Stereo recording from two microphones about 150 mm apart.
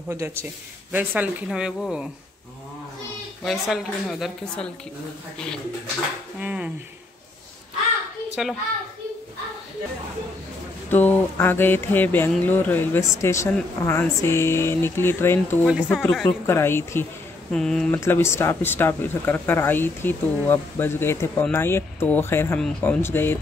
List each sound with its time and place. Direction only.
0.1 s speech: 15° right (ahead or behind)
3.4 s speech: centre (ahead or behind)
6.4 s speech: 10° right (ahead or behind)
8.4 s speech: centre (ahead or behind)
10.9 s speech: 15° left (ahead or behind)
15.6 s speech: 5° right (ahead or behind)
15.9 s speech: 10° left (ahead or behind)
17.5 s speech: 5° left (ahead or behind)
18.0 s speech: 15° left (ahead or behind)